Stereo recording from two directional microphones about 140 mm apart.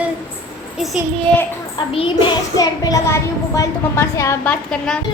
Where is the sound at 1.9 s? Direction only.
40° left (ahead or behind); by 4.5 s 20° left (ahead or behind).